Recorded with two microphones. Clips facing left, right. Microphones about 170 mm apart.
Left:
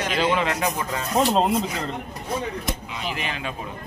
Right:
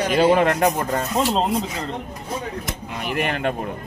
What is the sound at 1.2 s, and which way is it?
Speech, 5° left (ahead or behind).